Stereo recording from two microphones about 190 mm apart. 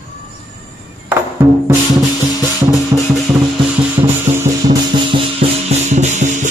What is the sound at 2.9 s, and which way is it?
Music, 15° right (ahead or behind).